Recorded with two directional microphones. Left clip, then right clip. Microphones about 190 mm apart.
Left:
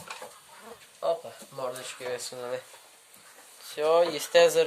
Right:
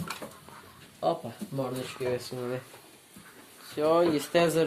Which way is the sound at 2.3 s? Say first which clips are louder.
Even; 25° left (ahead or behind).